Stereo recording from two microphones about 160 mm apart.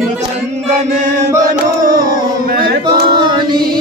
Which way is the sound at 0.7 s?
50° right (ahead or behind).